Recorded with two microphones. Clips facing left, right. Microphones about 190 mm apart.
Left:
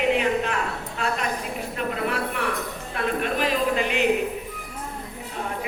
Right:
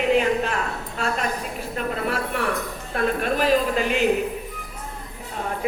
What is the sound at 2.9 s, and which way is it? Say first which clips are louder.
A woman's voice: right 3 dB; 40° right (ahead or behind).